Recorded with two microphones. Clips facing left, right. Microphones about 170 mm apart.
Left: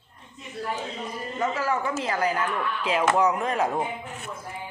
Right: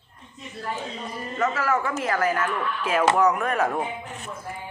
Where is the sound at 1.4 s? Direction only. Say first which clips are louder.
Right 2 dB; 20° left (ahead or behind).